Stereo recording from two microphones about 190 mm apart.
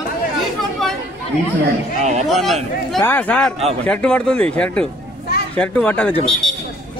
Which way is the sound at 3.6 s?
35° right (ahead or behind).